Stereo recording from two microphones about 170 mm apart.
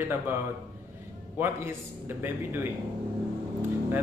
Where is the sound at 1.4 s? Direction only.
15° right (ahead or behind).